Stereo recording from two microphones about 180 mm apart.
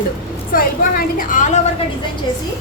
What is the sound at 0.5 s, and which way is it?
A woman's voice, 50° left (ahead or behind).